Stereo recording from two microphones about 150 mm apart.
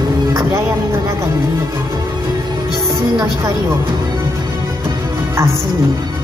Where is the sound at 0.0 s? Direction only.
25° right (ahead or behind).